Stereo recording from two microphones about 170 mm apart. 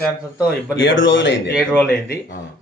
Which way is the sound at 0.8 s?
90° left.